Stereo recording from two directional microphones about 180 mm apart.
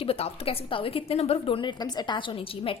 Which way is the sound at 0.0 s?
35° left (ahead or behind).